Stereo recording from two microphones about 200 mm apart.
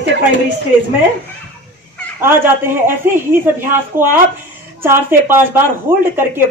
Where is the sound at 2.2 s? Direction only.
10° right (ahead or behind).